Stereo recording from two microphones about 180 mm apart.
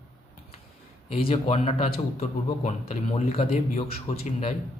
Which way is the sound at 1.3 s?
35° left (ahead or behind).